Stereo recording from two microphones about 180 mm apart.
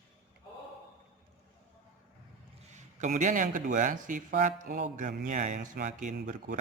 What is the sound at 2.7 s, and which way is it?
Speech, 40° right (ahead or behind).